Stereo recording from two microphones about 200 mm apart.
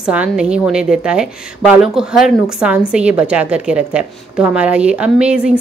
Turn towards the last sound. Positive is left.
turn(degrees=-5)  # may be behind; listen again after turning